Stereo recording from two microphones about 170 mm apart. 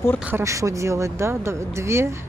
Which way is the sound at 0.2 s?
15° right (ahead or behind).